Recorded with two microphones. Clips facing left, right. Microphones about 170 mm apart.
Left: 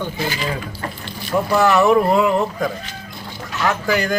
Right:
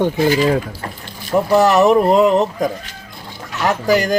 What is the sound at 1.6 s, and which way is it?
Speech, 35° right (ahead or behind).